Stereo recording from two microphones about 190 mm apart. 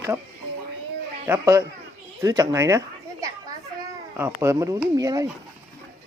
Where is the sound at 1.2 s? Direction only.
15° right (ahead or behind).